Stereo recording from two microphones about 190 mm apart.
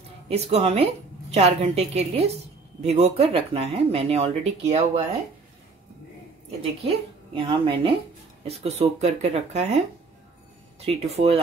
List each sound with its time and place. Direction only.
0.3 s speech: 35° right (ahead or behind)
6.9 s a woman's voice: 25° right (ahead or behind)
10.9 s speech: 35° right (ahead or behind)